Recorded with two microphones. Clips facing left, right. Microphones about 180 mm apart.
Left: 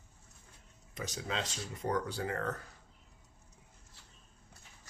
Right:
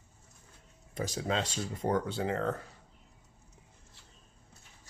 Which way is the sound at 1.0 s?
35° right (ahead or behind).